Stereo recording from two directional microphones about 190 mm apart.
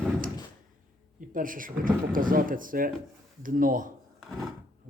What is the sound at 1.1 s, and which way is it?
Speech, 45° right (ahead or behind).